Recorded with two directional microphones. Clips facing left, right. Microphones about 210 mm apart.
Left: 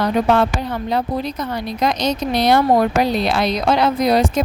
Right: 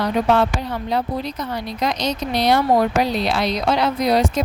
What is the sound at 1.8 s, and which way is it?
A woman's voice, 50° left (ahead or behind).